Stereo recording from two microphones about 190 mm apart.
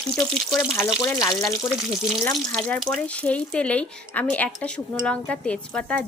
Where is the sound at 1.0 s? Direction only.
20° left (ahead or behind).